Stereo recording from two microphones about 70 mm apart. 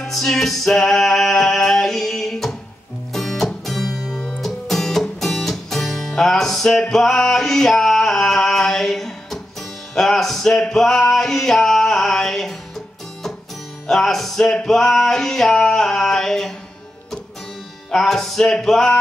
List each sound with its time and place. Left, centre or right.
0.0 s music: centre
17.9 s music: centre